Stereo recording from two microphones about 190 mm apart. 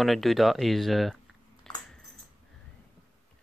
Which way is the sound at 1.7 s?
5° left (ahead or behind).